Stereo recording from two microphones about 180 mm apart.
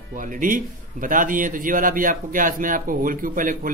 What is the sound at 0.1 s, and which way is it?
A man's voice, 50° right (ahead or behind).